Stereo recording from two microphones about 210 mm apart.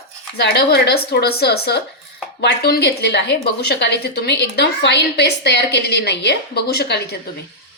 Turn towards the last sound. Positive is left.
turn(degrees=50)  # may be behind; listen again after turning